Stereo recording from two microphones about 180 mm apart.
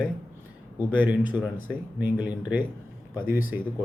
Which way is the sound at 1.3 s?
10° right (ahead or behind).